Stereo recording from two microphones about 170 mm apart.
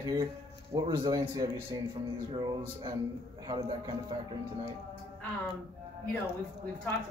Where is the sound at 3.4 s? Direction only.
25° right (ahead or behind).